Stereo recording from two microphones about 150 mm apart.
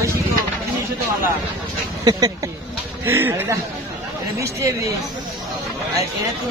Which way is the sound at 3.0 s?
15° right (ahead or behind).